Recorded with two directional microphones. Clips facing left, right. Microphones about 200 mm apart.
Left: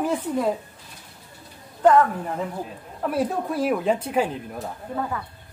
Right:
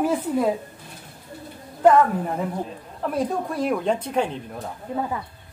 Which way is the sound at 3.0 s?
5° left (ahead or behind).